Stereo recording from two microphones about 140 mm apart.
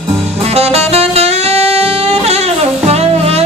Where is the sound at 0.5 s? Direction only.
50° right (ahead or behind).